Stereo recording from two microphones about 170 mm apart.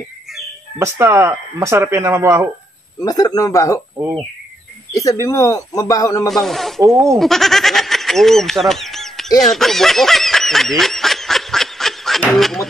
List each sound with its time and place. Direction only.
0.7 s speech: 15° right (ahead or behind)
3.0 s speech: 20° left (ahead or behind)
3.9 s speech: 20° right (ahead or behind)
4.9 s speech: 20° left (ahead or behind)
6.2 s speech: centre (ahead or behind)
9.4 s snicker: centre (ahead or behind)